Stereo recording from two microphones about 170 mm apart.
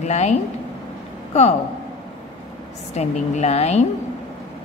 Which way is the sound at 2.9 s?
40° left (ahead or behind).